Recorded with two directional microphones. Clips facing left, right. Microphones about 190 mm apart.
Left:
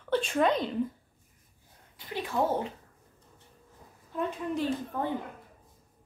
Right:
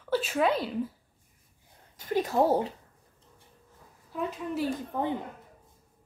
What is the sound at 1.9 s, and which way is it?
Speech, 40° right (ahead or behind).